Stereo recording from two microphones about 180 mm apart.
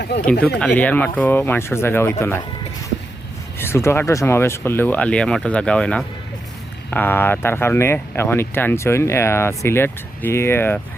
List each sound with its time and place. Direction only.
0.3 s speech: 70° left (ahead or behind)
0.6 s speech: 10° left (ahead or behind)
3.6 s speech: 15° left (ahead or behind)